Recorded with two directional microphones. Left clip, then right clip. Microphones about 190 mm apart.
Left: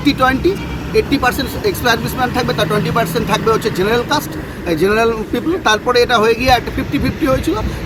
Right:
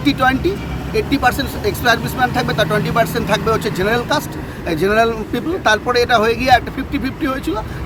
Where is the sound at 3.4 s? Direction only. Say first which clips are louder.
Left 3 dB; 15° right (ahead or behind).